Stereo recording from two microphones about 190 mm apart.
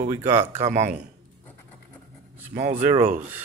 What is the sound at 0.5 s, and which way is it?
Speech, 35° right (ahead or behind).